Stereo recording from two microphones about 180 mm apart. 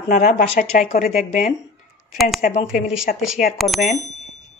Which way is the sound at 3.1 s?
50° left (ahead or behind).